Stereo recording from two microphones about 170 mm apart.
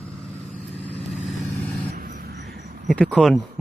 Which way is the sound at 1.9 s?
60° right (ahead or behind).